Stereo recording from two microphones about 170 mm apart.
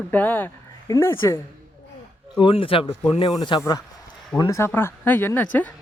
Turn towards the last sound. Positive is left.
turn(degrees=10)  # may be behind; listen again after turning